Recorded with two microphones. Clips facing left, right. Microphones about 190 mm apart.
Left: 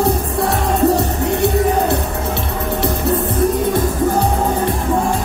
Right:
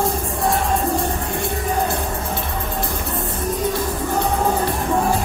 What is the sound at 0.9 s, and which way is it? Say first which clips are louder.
Music: left 6 dB; 70° left (ahead or behind).